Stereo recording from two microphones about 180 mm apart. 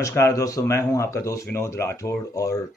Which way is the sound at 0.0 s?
15° left (ahead or behind).